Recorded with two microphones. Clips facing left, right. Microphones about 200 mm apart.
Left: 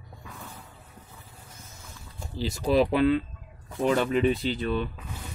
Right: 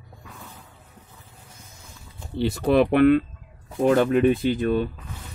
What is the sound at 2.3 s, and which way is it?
Speech, 60° right (ahead or behind).